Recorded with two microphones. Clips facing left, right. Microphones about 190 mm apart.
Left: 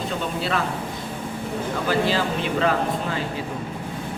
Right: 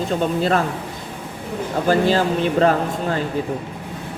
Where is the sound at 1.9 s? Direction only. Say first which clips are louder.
Right 6 dB; 45° right (ahead or behind).